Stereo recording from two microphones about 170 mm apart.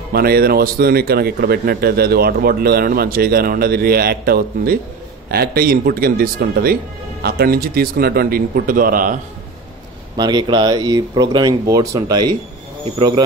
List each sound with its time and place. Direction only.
0.1 s speech: 65° right (ahead or behind)
10.1 s speech: 25° right (ahead or behind)